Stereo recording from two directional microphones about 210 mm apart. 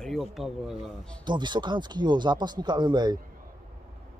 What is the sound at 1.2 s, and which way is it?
Speech, 20° right (ahead or behind).